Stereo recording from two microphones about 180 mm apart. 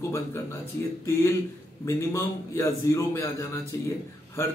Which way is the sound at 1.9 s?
15° left (ahead or behind).